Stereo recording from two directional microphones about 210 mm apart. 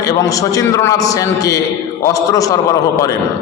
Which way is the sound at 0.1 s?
15° left (ahead or behind).